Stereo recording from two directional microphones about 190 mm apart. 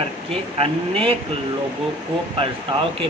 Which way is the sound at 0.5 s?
30° right (ahead or behind).